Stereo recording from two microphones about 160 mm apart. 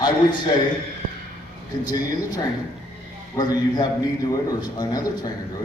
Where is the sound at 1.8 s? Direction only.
25° left (ahead or behind).